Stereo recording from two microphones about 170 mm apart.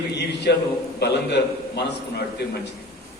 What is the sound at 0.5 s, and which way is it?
A man's voice, 75° left (ahead or behind).